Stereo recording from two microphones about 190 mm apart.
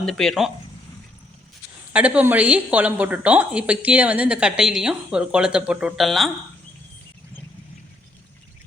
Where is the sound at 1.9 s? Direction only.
5° right (ahead or behind).